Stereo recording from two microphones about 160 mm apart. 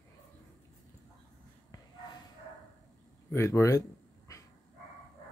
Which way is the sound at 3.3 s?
15° left (ahead or behind).